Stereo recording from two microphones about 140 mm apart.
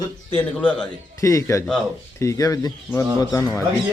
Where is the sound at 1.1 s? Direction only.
25° left (ahead or behind).